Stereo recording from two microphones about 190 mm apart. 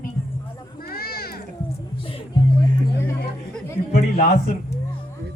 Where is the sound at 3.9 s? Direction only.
45° left (ahead or behind).